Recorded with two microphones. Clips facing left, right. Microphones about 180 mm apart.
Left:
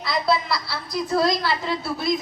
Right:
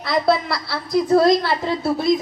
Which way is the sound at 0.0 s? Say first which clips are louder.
Right 4 dB; 60° right (ahead or behind).